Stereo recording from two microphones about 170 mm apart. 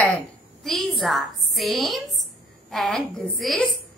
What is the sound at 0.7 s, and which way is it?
A woman's voice, centre (ahead or behind).